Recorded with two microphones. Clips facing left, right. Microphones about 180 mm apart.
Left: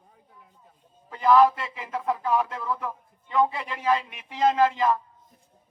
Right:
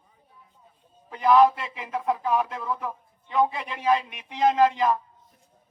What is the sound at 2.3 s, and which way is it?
A man's voice, 20° right (ahead or behind).